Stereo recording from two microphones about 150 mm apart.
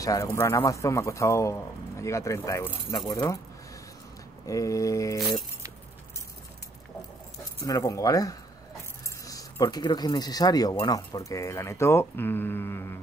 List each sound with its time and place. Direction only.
0.0 s speech: 20° left (ahead or behind)
4.5 s speech: 20° left (ahead or behind)
7.6 s speech: 20° left (ahead or behind)